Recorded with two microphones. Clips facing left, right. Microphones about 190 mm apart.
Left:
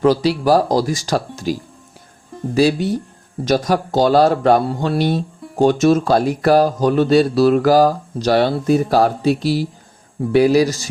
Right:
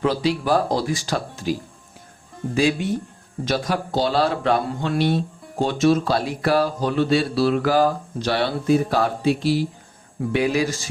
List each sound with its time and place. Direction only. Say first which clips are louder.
0.0 s speech: left 6 dB; 40° left (ahead or behind)
2.6 s speech: left 5 dB; 35° left (ahead or behind)